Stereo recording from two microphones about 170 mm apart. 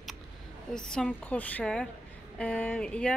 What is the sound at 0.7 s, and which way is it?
A woman's voice, 5° left (ahead or behind).